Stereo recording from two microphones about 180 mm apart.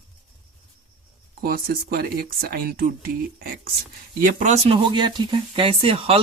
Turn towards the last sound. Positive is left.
turn(degrees=-30)  # may be behind; listen again after turning